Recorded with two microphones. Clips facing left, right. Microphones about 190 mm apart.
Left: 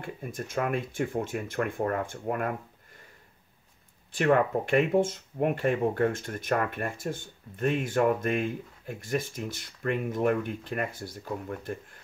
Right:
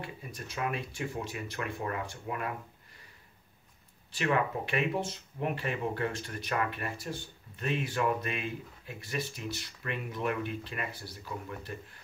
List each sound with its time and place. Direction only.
0.0 s speech: 50° left (ahead or behind)
4.1 s speech: 50° left (ahead or behind)